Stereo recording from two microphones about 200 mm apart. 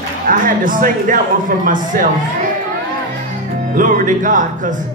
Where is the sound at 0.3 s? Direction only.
45° right (ahead or behind).